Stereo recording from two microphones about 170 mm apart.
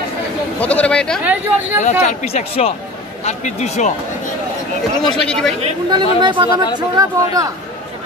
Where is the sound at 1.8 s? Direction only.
45° left (ahead or behind).